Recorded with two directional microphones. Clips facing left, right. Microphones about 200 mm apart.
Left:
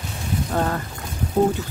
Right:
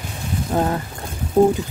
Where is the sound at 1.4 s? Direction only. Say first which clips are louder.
Right 5 dB; 30° right (ahead or behind).